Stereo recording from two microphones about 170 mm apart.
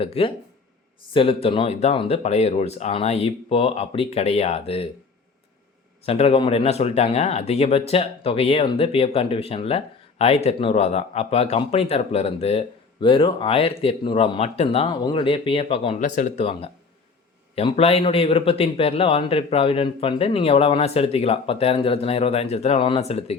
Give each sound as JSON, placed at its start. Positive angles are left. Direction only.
{"t": 0.0, "sound": "speech", "side_deg": 35}
{"t": 6.1, "sound": "speech", "side_deg": 35}
{"t": 16.0, "sound": "speech", "side_deg": 45}
{"t": 17.5, "sound": "speech", "side_deg": 35}